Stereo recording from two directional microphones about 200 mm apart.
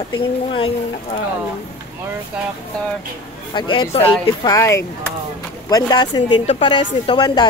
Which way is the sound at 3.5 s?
25° left (ahead or behind).